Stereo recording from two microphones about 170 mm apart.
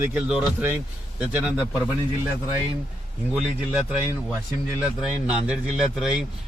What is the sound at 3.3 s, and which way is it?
Speech, 5° right (ahead or behind).